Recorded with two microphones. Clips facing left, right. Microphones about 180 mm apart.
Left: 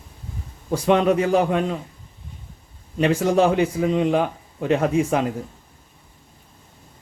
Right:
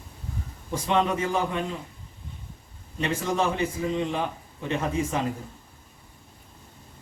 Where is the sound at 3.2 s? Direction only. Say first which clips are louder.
Left 7 dB; 75° left (ahead or behind).